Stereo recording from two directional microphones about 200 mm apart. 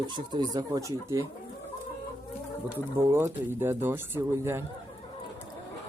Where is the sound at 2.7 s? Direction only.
10° right (ahead or behind).